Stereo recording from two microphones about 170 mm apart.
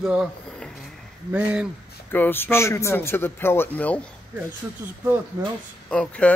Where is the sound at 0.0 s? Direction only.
5° right (ahead or behind).